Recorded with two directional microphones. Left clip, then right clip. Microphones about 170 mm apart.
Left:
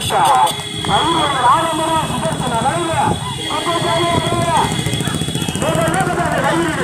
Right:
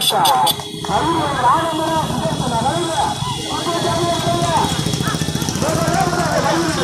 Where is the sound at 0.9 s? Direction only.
15° left (ahead or behind).